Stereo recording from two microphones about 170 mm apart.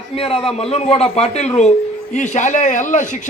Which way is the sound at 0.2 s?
35° left (ahead or behind).